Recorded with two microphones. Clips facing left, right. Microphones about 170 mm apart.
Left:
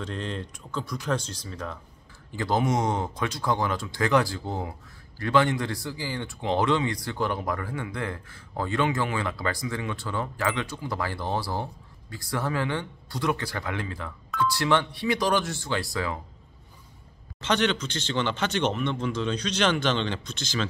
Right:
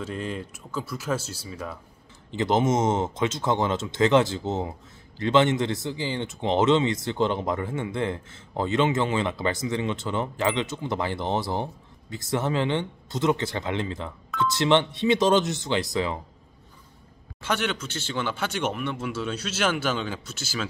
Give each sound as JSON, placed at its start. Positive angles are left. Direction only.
{"t": 0.0, "sound": "speech", "side_deg": -5}
{"t": 2.3, "sound": "speech", "side_deg": -20}
{"t": 17.4, "sound": "speech", "side_deg": -10}